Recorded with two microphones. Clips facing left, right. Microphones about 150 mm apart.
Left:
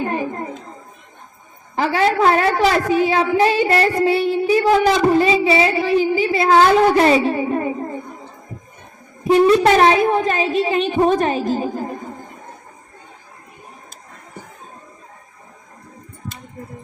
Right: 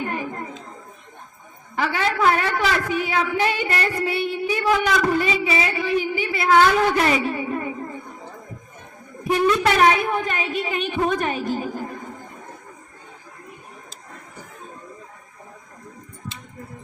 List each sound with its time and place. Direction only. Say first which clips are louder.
0.0 s a sound: left 5 dB; 30° left (ahead or behind)
1.7 s a woman's voice: left 6 dB; 30° left (ahead or behind)
9.2 s a woman's voice: left 7 dB; 30° left (ahead or behind)